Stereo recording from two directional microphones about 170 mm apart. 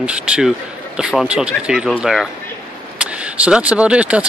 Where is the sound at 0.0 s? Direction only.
5° right (ahead or behind).